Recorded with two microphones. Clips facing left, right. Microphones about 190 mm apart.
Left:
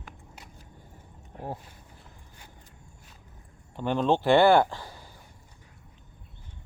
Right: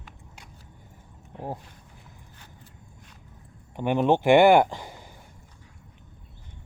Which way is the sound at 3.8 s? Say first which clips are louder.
Right 3 dB; 15° right (ahead or behind).